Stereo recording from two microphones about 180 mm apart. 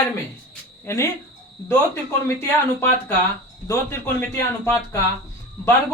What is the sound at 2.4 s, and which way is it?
A man's voice, 15° left (ahead or behind).